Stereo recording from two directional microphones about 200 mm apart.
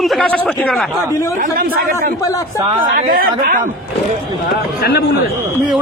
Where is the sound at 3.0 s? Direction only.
45° right (ahead or behind).